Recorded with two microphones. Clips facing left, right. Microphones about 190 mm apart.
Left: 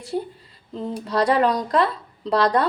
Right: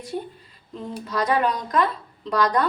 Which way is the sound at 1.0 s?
30° left (ahead or behind).